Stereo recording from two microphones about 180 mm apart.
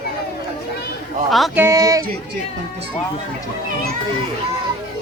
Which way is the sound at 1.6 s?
15° right (ahead or behind).